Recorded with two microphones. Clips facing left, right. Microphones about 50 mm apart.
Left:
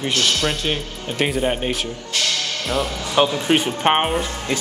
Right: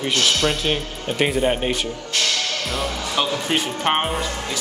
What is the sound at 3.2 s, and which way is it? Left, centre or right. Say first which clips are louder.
Speech: left 5 dB; centre.